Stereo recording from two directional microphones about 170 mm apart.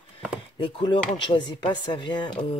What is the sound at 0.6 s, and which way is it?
Speech, 30° left (ahead or behind).